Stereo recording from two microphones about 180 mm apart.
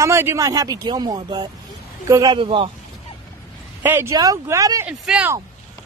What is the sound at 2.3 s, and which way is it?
Speech, 30° right (ahead or behind).